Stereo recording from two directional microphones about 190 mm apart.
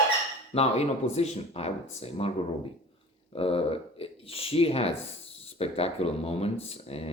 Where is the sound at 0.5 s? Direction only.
35° left (ahead or behind).